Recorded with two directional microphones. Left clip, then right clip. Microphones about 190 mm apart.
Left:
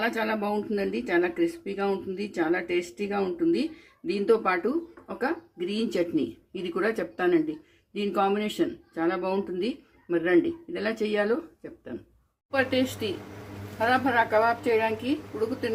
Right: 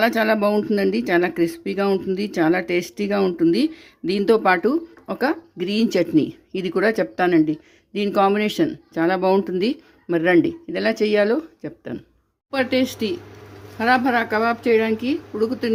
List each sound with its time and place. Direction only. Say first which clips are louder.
0.0 s speech: right 10 dB; 60° right (ahead or behind)